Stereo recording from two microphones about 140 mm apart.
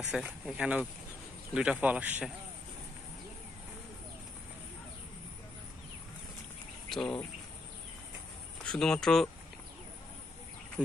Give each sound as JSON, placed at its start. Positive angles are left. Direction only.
{"t": 0.1, "sound": "a man's voice", "side_deg": -5}
{"t": 6.9, "sound": "speech", "side_deg": 5}
{"t": 8.6, "sound": "speech", "side_deg": 5}